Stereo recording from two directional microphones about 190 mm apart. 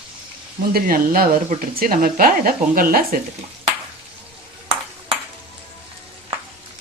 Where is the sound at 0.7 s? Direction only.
50° right (ahead or behind).